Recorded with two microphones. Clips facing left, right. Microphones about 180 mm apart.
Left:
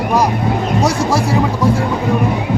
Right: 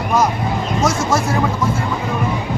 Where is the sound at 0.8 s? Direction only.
35° left (ahead or behind).